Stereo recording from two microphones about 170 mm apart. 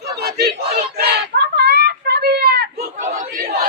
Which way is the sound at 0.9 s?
70° right (ahead or behind).